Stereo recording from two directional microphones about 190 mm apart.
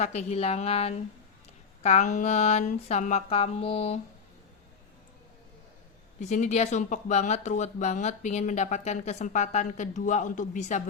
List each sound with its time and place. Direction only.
0.0 s speech: 35° left (ahead or behind)
6.1 s speech: 40° left (ahead or behind)